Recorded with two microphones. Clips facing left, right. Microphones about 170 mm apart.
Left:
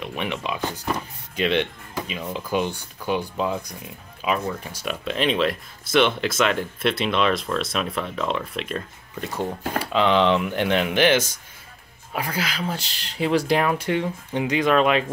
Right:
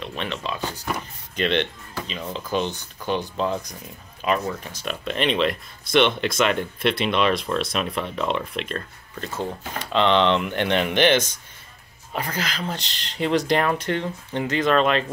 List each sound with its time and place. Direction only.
0.0 s speech: 15° left (ahead or behind)